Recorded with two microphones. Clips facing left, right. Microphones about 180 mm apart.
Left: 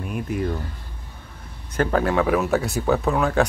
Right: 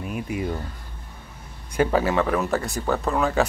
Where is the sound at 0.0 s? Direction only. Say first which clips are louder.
Left 2 dB; 5° right (ahead or behind).